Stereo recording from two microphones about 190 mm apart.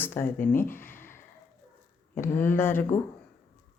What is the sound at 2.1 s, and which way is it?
Speech, 15° left (ahead or behind).